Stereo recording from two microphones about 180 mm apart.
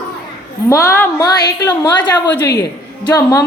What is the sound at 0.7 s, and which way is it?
A woman's voice, 15° left (ahead or behind).